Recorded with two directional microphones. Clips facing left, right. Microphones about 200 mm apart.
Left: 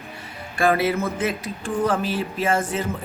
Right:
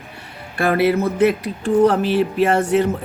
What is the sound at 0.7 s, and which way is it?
Speech, 60° right (ahead or behind).